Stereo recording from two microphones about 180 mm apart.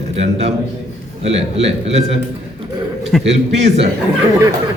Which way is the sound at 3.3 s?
35° right (ahead or behind).